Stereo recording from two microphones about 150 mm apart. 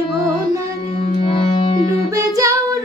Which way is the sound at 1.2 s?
40° left (ahead or behind).